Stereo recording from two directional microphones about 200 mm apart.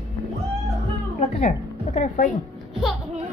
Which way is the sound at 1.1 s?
30° left (ahead or behind).